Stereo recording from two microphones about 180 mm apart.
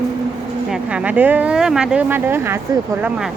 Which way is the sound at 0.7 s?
5° right (ahead or behind).